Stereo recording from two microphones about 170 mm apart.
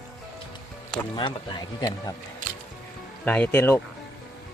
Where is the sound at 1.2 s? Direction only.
25° left (ahead or behind).